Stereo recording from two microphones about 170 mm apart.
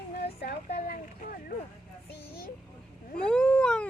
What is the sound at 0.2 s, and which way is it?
Vehicle, 70° left (ahead or behind).